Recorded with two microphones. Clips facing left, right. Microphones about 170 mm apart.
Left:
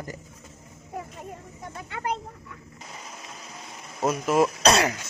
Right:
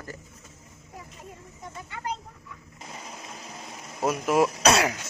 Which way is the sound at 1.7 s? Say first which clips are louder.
Left 4 dB; 60° left (ahead or behind).